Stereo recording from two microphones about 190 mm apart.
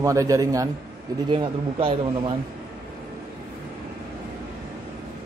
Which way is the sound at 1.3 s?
30° right (ahead or behind).